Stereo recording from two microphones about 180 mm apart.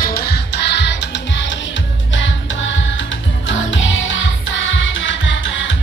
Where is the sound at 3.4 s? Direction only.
90° left.